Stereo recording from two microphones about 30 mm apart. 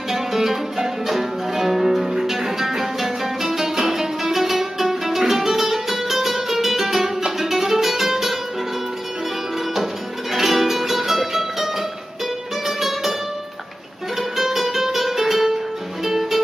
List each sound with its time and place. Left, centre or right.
0.1 s music: centre
10.3 s music: centre
14.3 s music: centre